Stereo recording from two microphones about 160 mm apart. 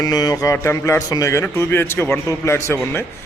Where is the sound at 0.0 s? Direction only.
25° left (ahead or behind).